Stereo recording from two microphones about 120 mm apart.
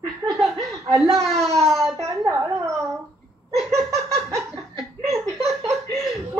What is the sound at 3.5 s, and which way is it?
Speech, centre (ahead or behind).